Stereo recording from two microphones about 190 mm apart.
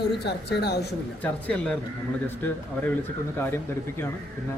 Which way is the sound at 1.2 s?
5° left (ahead or behind).